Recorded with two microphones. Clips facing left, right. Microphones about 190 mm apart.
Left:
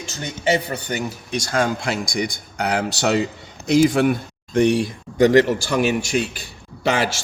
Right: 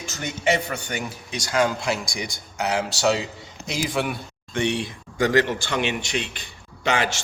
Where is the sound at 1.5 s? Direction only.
50° left (ahead or behind).